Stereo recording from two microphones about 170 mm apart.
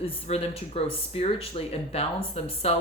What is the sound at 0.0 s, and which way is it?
Speech, 35° left (ahead or behind).